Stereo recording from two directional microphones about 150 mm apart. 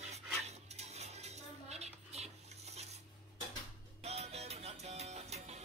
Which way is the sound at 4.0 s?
45° right (ahead or behind).